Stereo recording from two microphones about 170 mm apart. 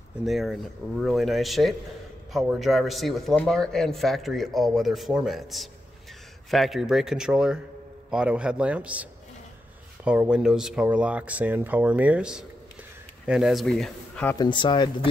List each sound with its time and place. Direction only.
0.2 s speech: centre (ahead or behind)
10.0 s speech: 5° right (ahead or behind)
14.4 s speech: 30° left (ahead or behind)